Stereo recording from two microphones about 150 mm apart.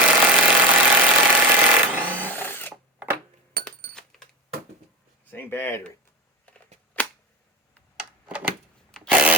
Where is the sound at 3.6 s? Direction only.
80° right.